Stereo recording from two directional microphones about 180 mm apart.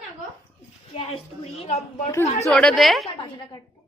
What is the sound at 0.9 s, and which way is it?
Speech, 35° left (ahead or behind).